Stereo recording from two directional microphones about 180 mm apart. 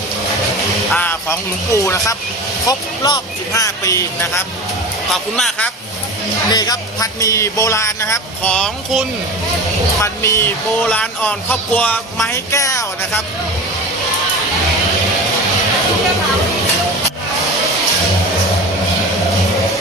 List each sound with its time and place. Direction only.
0.9 s speech: 10° left (ahead or behind)
5.0 s speech: centre (ahead or behind)
6.5 s speech: 20° left (ahead or behind); by 9.0 s centre (ahead or behind)
10.0 s speech: 15° left (ahead or behind)
12.3 s speech: 15° left (ahead or behind)